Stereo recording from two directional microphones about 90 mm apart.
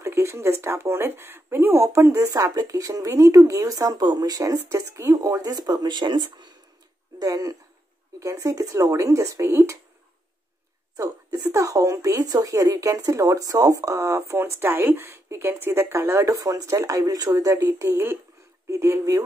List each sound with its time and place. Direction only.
0.0 s speech: 30° right (ahead or behind); by 6.5 s 55° right (ahead or behind)
7.2 s speech: 45° right (ahead or behind)
11.0 s speech: 40° right (ahead or behind)
17.6 s speech: 30° right (ahead or behind)